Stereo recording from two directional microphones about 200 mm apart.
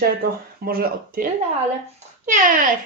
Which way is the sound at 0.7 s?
45° right (ahead or behind).